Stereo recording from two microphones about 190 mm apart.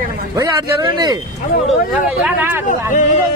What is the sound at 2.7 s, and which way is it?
Speech, 40° left (ahead or behind).